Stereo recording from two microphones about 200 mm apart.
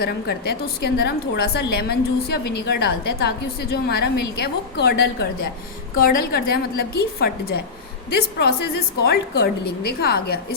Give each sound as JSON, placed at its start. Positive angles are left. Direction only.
{"t": 0.0, "sound": "a woman's voice", "side_deg": 55}
{"t": 6.0, "sound": "a woman's voice", "side_deg": 45}